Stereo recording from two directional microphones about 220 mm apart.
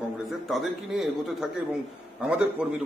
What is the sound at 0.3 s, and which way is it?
A man's voice, centre (ahead or behind).